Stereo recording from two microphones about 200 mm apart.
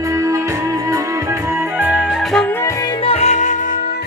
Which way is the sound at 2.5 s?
15° left (ahead or behind).